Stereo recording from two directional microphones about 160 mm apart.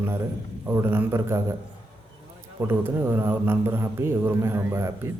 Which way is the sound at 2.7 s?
15° right (ahead or behind).